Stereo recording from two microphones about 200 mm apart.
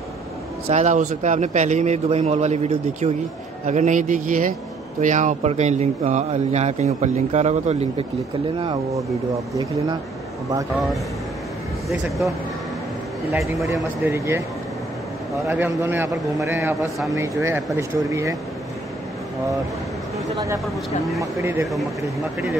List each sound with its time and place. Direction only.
0.7 s speech: 35° right (ahead or behind)
8.5 s speech: 20° right (ahead or behind)
11.9 s speech: centre (ahead or behind)
14.0 s a man's voice: 15° right (ahead or behind)
15.4 s a man's voice: 10° right (ahead or behind)
20.3 s a man's voice: 15° right (ahead or behind)
20.6 s speech: centre (ahead or behind)
21.2 s a man's voice: 15° right (ahead or behind)